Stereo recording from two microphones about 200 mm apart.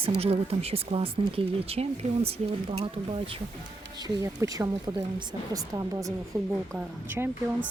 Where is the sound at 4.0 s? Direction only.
15° right (ahead or behind).